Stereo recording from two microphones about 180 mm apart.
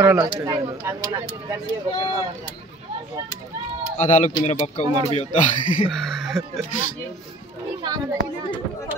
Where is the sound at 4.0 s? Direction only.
40° left (ahead or behind).